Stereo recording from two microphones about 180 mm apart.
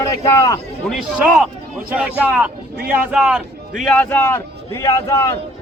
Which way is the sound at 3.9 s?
10° left (ahead or behind).